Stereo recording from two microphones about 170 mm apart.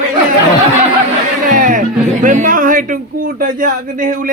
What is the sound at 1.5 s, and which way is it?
Speech, 50° right (ahead or behind).